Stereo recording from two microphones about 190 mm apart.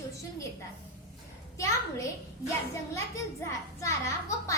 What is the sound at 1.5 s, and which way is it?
Speech, 15° left (ahead or behind).